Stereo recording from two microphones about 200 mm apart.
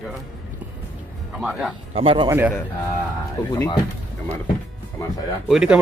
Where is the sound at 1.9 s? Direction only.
25° right (ahead or behind).